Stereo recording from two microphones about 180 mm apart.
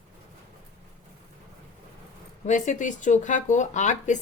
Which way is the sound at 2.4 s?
40° left (ahead or behind).